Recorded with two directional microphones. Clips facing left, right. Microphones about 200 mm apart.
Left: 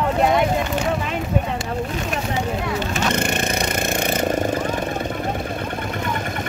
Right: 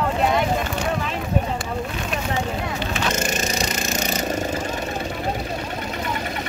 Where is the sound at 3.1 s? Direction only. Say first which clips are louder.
Left 2 dB; 60° left (ahead or behind).